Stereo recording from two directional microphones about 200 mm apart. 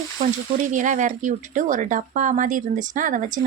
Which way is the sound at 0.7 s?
40° right (ahead or behind).